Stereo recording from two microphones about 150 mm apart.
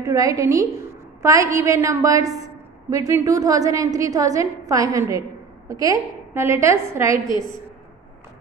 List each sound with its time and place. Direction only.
0.0 s a woman's voice: 20° right (ahead or behind)